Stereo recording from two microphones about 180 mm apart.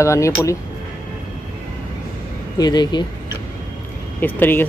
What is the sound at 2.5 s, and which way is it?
Speech, 20° left (ahead or behind).